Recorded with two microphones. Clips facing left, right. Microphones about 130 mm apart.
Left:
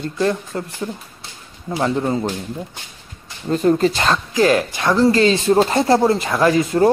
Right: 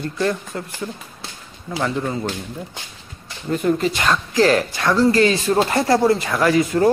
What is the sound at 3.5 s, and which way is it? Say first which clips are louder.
Speech: left 4 dB; 30° left (ahead or behind).